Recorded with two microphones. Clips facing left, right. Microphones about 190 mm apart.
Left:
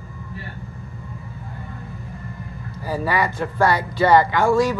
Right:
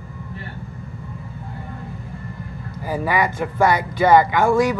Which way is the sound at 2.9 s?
15° right (ahead or behind).